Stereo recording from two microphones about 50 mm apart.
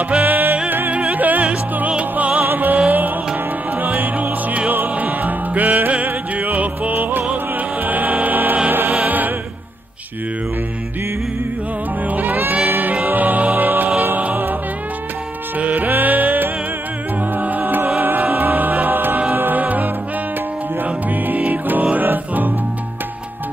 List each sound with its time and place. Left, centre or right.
0.2 s music: right
2.4 s music: right
12.1 s music: right
15.6 s music: right